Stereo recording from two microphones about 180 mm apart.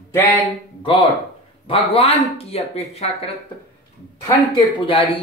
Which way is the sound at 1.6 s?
30° left (ahead or behind).